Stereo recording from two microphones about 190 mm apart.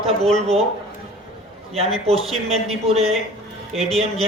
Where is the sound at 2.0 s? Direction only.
30° right (ahead or behind).